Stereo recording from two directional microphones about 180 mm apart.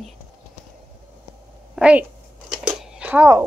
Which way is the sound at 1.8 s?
5° right (ahead or behind).